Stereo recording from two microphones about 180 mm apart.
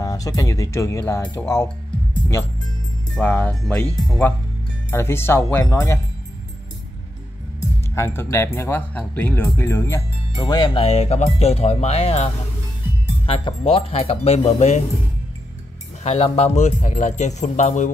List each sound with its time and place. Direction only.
0.0 s speech: 20° left (ahead or behind)
3.2 s speech: 10° left (ahead or behind)
4.9 s speech: 15° left (ahead or behind)
7.6 s speech: 15° left (ahead or behind); by 12.3 s 35° left (ahead or behind)
13.3 s speech: 30° left (ahead or behind)
16.0 s speech: 35° left (ahead or behind)